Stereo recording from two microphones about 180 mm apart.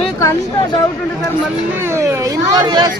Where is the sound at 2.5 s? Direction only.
25° right (ahead or behind).